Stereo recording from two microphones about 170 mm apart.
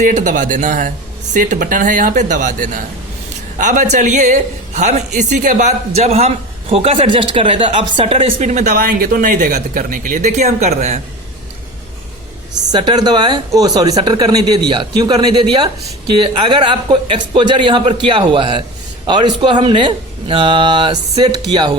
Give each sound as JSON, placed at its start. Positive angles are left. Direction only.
{"t": 0.0, "sound": "a man's voice", "side_deg": -45}
{"t": 8.7, "sound": "speech", "side_deg": -60}
{"t": 9.5, "sound": "a man's voice", "side_deg": -65}
{"t": 12.7, "sound": "speech", "side_deg": -25}